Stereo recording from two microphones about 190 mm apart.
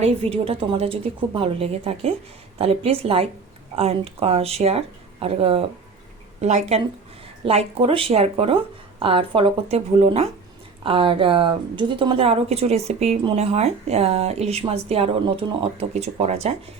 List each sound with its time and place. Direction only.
0.0 s a woman's voice: 30° right (ahead or behind)